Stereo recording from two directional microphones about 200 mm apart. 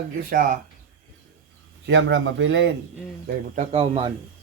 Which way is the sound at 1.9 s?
60° right (ahead or behind).